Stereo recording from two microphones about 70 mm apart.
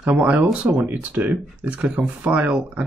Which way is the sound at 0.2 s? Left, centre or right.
Right.